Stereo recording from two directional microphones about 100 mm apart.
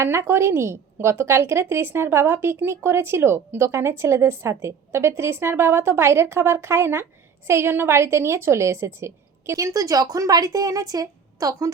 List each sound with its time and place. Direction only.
0.0 s speech: 25° right (ahead or behind)